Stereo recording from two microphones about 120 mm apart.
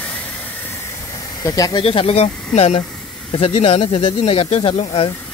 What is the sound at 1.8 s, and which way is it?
Speech, 55° left (ahead or behind).